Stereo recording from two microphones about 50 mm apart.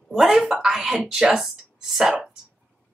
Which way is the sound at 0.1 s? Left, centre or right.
Centre.